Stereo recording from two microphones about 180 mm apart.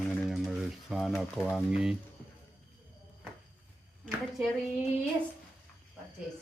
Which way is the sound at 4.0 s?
Centre (ahead or behind).